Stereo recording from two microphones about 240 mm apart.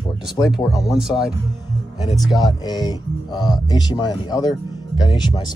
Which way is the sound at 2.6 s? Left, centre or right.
Centre.